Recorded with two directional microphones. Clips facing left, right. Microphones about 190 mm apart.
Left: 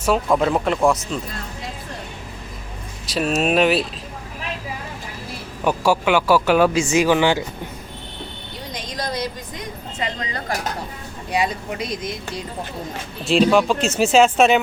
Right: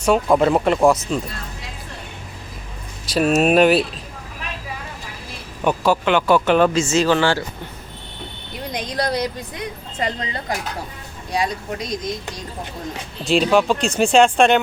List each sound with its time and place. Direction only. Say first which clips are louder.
0.0 s speech: right 3 dB; centre (ahead or behind)
3.1 s speech: right 4 dB; centre (ahead or behind)
5.6 s speech: even; 10° left (ahead or behind)
8.7 s a sound: right 5 dB; 60° right (ahead or behind)
11.3 s speech: left 1 dB; 5° left (ahead or behind)
13.2 s speech: left 1 dB; centre (ahead or behind)